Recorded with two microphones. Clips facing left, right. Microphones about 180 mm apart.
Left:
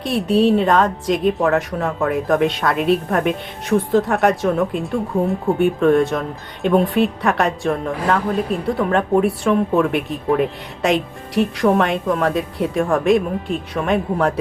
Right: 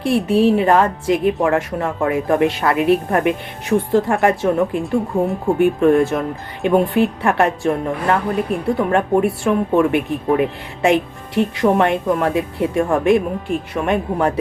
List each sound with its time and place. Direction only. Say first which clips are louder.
0.4 s speech: right 1 dB; 5° right (ahead or behind)